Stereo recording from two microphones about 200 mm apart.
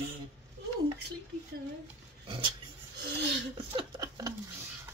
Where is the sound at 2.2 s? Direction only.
25° right (ahead or behind).